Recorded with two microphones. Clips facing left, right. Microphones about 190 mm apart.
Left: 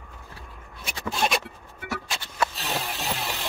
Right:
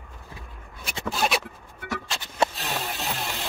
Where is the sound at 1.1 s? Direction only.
Centre (ahead or behind).